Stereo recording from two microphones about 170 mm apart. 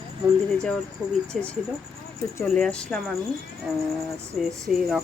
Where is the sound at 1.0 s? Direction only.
15° right (ahead or behind).